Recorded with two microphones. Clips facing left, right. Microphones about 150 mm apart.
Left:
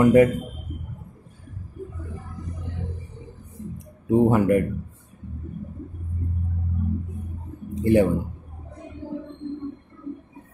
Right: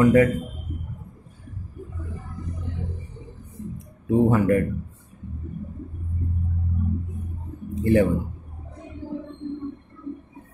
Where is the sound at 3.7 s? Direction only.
15° left (ahead or behind).